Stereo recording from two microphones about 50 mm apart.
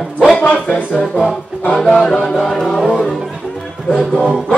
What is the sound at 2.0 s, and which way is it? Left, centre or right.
Music, centre.